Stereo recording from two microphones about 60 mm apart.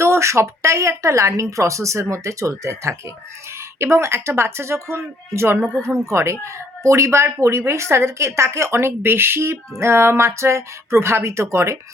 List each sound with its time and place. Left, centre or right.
0.0 s speech: right
3.9 s speech: right